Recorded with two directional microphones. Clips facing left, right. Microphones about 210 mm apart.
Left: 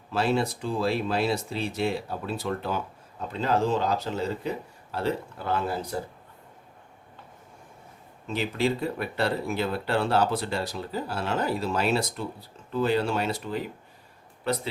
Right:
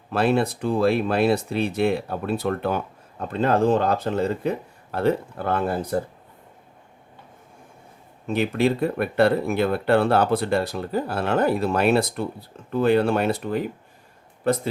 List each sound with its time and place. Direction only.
0.1 s speech: 60° right (ahead or behind)
8.3 s a man's voice: 55° right (ahead or behind)